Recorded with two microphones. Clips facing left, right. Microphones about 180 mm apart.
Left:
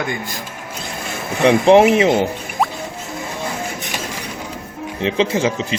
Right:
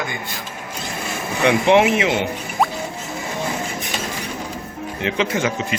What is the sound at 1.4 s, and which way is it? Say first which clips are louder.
Speech: left 4 dB; 35° left (ahead or behind).